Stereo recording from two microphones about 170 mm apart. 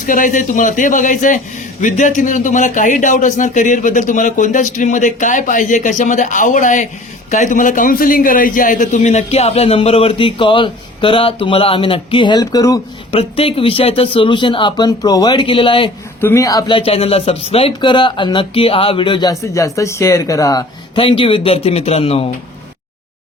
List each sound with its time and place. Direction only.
0.0 s a man's voice: 50° left (ahead or behind); by 12.8 s 20° left (ahead or behind)
13.1 s a man's voice: 35° left (ahead or behind)
16.2 s speech: 15° left (ahead or behind); by 22.3 s 35° left (ahead or behind)